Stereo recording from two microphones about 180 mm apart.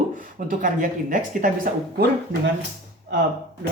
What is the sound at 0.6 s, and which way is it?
Speech, 45° right (ahead or behind).